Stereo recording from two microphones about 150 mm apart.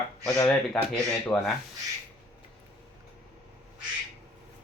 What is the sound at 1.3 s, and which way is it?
Speech, 15° left (ahead or behind).